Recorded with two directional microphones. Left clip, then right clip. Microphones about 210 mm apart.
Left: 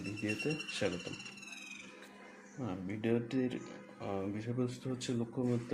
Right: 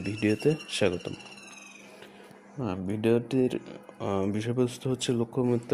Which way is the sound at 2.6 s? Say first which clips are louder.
Right 9 dB; 45° right (ahead or behind).